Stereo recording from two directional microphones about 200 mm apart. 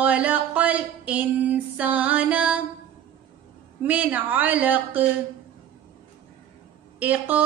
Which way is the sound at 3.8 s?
10° right (ahead or behind).